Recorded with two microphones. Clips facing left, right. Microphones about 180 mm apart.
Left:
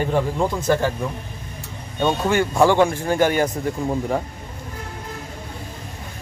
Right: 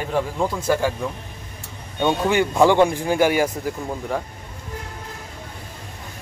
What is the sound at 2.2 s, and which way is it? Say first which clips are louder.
Speech: right 1 dB; 15° right (ahead or behind).